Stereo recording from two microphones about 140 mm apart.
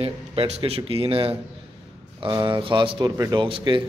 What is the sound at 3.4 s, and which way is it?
Speech, 35° right (ahead or behind).